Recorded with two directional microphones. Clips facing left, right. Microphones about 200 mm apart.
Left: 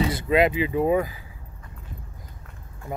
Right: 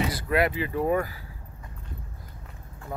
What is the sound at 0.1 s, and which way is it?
Speech, 20° left (ahead or behind).